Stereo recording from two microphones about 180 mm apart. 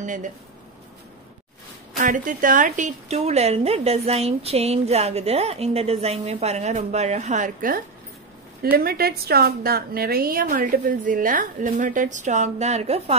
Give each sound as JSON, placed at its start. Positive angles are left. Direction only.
{"t": 0.0, "sound": "a woman's voice", "side_deg": -45}
{"t": 2.0, "sound": "a woman's voice", "side_deg": -45}
{"t": 8.7, "sound": "a woman's voice", "side_deg": -60}